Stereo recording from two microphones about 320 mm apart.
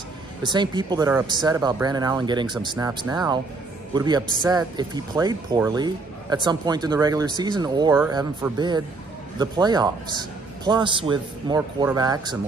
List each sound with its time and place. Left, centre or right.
0.4 s a man's voice: centre